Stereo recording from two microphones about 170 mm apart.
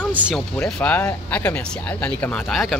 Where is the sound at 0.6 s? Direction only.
10° left (ahead or behind).